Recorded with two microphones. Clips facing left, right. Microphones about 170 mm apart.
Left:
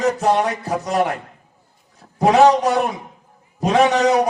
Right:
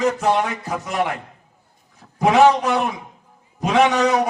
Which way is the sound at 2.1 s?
40° left (ahead or behind).